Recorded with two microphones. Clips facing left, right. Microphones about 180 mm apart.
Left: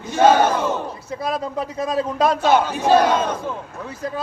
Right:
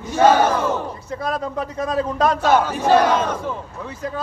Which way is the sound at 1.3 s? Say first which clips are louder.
Even; 30° left (ahead or behind).